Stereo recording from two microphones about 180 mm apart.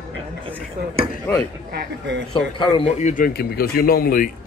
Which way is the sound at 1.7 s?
65° right (ahead or behind).